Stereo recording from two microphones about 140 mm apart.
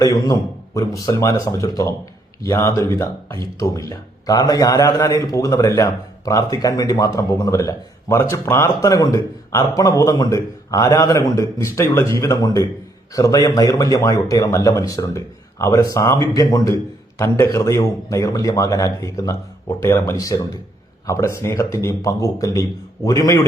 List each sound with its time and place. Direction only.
0.0 s speech: 25° left (ahead or behind)